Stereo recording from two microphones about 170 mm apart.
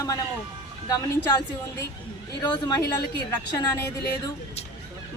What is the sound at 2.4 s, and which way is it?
A woman's voice, 25° left (ahead or behind).